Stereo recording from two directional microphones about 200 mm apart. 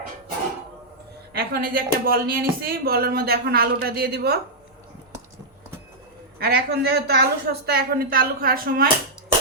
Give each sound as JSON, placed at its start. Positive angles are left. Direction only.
{"t": 1.3, "sound": "speech", "side_deg": -50}
{"t": 6.4, "sound": "speech", "side_deg": -50}